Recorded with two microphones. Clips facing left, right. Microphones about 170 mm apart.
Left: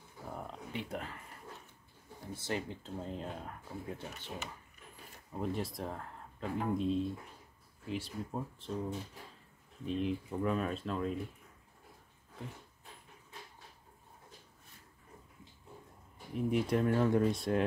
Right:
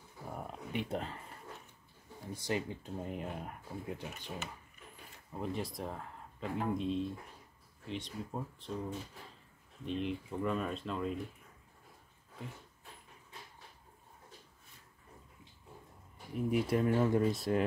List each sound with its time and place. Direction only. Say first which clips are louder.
0.3 s a sound: right 2 dB; 10° right (ahead or behind)
0.8 s speech: right 3 dB; 30° right (ahead or behind)
2.3 s speech: right 2 dB; 15° right (ahead or behind)
5.3 s speech: left 2 dB; centre (ahead or behind)
9.8 s speech: left 2 dB; centre (ahead or behind)
16.3 s speech: even; centre (ahead or behind)